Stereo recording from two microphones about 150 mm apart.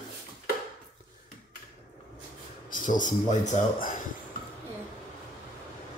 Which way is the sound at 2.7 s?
60° left (ahead or behind).